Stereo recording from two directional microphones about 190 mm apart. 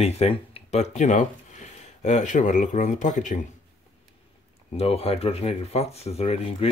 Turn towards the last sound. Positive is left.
turn(degrees=30)  # may be behind; listen again after turning